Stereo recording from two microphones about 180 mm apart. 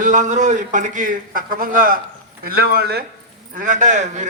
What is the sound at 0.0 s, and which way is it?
A man's voice, 45° right (ahead or behind).